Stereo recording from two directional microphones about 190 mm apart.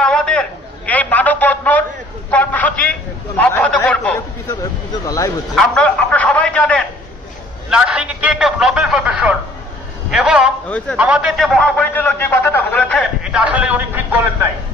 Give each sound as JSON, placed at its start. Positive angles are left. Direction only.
{"t": 0.0, "sound": "a sound", "side_deg": 5}
{"t": 5.0, "sound": "speech", "side_deg": 20}
{"t": 5.6, "sound": "a man's voice", "side_deg": 5}
{"t": 7.7, "sound": "a man's voice", "side_deg": -5}
{"t": 13.2, "sound": "a man's voice", "side_deg": -5}